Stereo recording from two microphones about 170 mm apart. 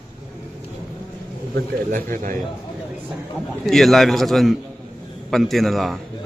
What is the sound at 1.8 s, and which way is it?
Speech, 50° right (ahead or behind).